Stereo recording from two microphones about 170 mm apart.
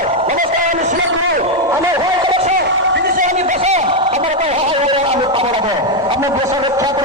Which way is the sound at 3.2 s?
45° right (ahead or behind).